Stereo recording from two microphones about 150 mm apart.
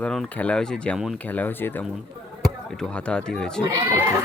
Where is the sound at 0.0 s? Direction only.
5° left (ahead or behind).